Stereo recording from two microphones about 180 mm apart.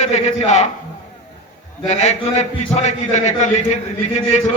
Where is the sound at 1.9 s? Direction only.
40° left (ahead or behind).